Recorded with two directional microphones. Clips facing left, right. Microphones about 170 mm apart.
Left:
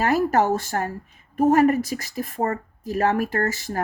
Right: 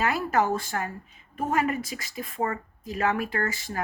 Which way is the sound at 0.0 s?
40° left (ahead or behind).